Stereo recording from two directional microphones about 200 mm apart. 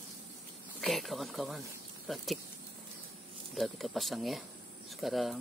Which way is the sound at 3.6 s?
Centre (ahead or behind).